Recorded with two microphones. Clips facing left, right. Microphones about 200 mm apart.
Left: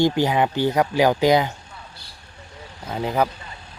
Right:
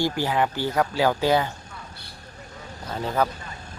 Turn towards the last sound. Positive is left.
turn(degrees=15)  # may be behind; listen again after turning